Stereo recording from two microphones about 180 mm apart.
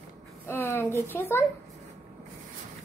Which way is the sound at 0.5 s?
10° left (ahead or behind).